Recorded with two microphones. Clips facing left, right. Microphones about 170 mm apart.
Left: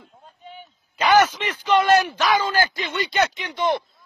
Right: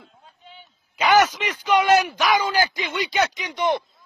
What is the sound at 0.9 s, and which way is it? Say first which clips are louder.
A man's voice: left 1 dB; 10° right (ahead or behind).